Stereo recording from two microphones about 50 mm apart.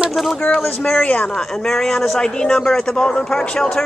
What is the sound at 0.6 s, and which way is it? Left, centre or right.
Speech, centre.